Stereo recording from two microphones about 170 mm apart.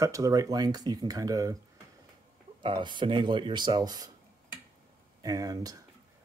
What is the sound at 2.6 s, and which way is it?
Speech, 25° right (ahead or behind).